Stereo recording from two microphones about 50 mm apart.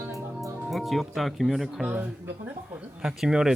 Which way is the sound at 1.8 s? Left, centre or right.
Right.